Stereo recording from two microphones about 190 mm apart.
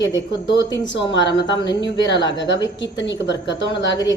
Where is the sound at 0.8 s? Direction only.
70° left (ahead or behind).